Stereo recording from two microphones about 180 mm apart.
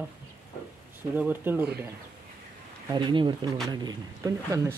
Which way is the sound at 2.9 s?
25° right (ahead or behind).